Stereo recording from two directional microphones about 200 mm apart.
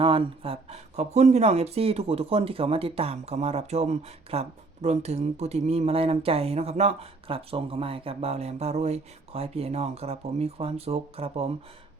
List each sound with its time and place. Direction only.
0.0 s speech: 25° right (ahead or behind)